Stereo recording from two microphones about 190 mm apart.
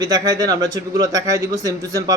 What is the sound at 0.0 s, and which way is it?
A man's voice, 20° right (ahead or behind).